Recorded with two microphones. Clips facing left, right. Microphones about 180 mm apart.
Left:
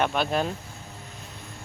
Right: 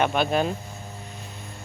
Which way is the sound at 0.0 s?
5° right (ahead or behind).